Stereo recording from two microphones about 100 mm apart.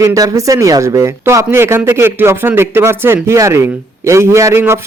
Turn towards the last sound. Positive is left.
turn(degrees=-25)  # may be behind; listen again after turning